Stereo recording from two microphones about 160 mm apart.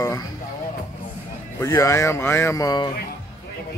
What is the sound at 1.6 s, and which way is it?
Speech, 20° left (ahead or behind).